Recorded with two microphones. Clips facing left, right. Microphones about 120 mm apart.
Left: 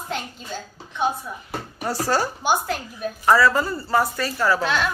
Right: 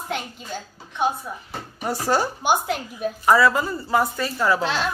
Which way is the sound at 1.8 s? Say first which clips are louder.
Right 1 dB; 15° right (ahead or behind).